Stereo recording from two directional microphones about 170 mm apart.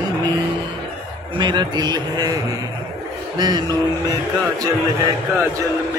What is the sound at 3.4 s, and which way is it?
Speech, 25° right (ahead or behind).